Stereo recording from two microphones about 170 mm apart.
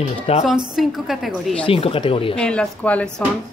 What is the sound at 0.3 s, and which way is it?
Speech, 35° left (ahead or behind).